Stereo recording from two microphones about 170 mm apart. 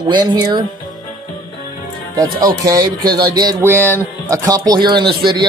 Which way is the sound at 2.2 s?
20° right (ahead or behind).